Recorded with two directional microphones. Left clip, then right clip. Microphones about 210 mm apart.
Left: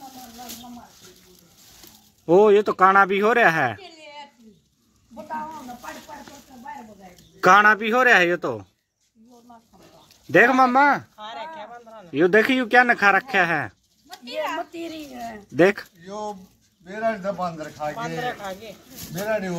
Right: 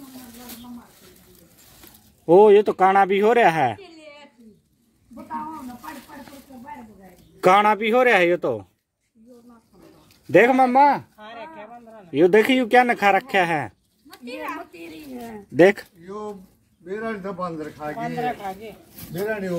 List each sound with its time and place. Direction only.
2.2 s speech: 5° right (ahead or behind)
3.8 s a sound: 45° left (ahead or behind)
7.3 s speech: 10° right (ahead or behind)
10.3 s speech: 5° right (ahead or behind)
11.1 s a sound: 40° left (ahead or behind)
12.1 s speech: 10° right (ahead or behind)
14.0 s a sound: 35° left (ahead or behind)
15.5 s speech: 15° right (ahead or behind)
16.1 s speech: 40° left (ahead or behind)